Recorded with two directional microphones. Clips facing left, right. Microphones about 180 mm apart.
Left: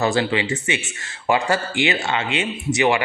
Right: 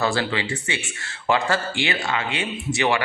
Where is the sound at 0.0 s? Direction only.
20° left (ahead or behind).